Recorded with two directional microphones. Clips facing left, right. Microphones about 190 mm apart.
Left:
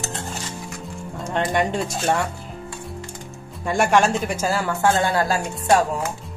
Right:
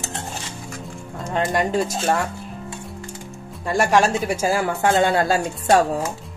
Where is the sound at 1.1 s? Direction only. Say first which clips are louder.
Even; centre (ahead or behind).